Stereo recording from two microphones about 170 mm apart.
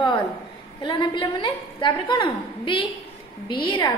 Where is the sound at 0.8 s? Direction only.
30° left (ahead or behind).